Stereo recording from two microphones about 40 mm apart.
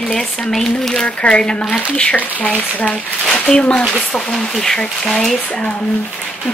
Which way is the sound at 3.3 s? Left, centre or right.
Centre.